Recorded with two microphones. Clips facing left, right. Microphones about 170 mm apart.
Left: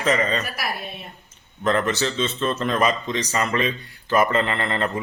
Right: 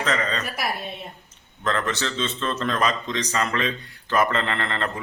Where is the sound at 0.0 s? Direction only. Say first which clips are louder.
Left 4 dB; 10° left (ahead or behind).